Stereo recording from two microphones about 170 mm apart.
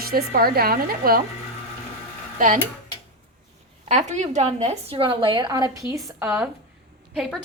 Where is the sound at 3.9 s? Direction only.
45° right (ahead or behind); by 5.8 s 20° right (ahead or behind).